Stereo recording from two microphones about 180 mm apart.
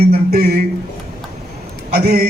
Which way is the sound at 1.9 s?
60° right (ahead or behind).